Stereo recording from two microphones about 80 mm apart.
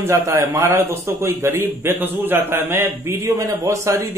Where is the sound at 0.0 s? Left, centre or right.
Right.